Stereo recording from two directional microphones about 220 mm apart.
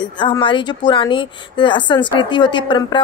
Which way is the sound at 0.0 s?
20° left (ahead or behind).